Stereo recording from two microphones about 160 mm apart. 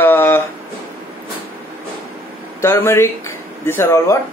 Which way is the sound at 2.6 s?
15° left (ahead or behind).